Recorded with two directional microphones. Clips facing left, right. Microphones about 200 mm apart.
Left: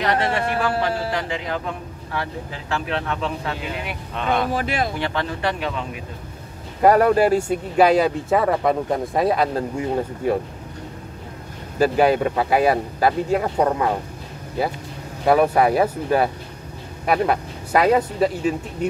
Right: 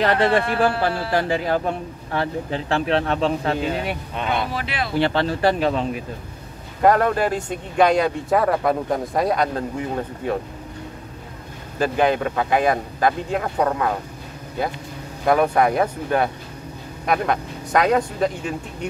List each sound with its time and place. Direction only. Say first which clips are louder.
0.0 s speech: right 3 dB; 35° right (ahead or behind)
4.1 s speech: left 4 dB; 5° right (ahead or behind)
4.5 s speech: left 4 dB; 45° left (ahead or behind)
4.9 s speech: right 5 dB; 30° right (ahead or behind)
6.8 s speech: left 3 dB; 10° left (ahead or behind)
11.8 s speech: left 3 dB; 10° left (ahead or behind)
15.2 s speech: left 1 dB; 5° left (ahead or behind)